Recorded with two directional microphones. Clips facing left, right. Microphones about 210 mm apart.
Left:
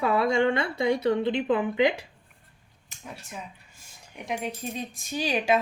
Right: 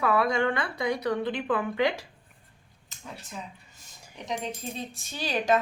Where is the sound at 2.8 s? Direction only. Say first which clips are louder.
Left 1 dB; 15° left (ahead or behind).